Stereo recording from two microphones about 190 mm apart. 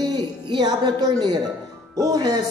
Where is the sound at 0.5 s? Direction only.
20° right (ahead or behind).